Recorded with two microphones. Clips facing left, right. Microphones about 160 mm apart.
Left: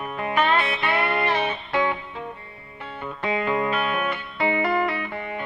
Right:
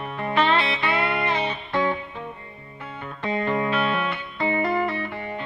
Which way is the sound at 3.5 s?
5° left (ahead or behind).